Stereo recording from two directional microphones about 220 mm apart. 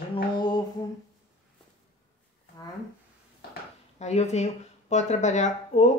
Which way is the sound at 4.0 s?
30° left (ahead or behind).